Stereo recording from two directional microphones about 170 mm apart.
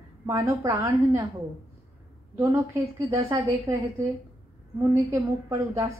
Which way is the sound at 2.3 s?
15° right (ahead or behind).